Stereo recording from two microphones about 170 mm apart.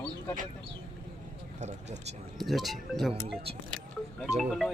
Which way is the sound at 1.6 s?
40° right (ahead or behind).